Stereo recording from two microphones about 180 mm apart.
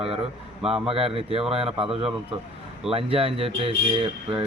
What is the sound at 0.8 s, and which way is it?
Speech, 30° right (ahead or behind).